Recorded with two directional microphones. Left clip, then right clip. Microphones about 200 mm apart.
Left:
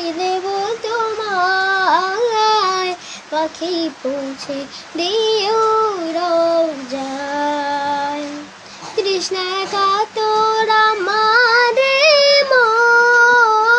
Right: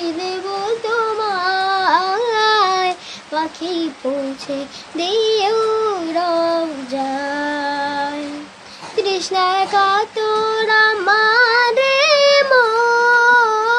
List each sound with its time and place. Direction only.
0.0 s music: 10° right (ahead or behind)
0.8 s a sound: 15° right (ahead or behind)
3.3 s a child's voice: 15° right (ahead or behind)
4.9 s child singing: 15° right (ahead or behind)
7.3 s music: 15° right (ahead or behind)
8.9 s child singing: 15° right (ahead or behind)